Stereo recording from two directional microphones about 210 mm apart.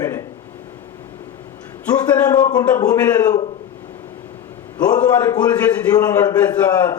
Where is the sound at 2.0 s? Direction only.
20° left (ahead or behind).